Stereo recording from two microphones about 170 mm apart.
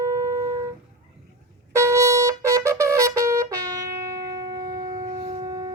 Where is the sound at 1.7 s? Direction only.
15° right (ahead or behind).